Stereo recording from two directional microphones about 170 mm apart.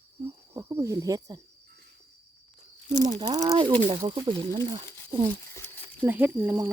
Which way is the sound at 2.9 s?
25° right (ahead or behind).